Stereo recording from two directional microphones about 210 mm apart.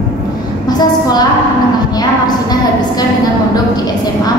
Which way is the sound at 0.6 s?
20° left (ahead or behind).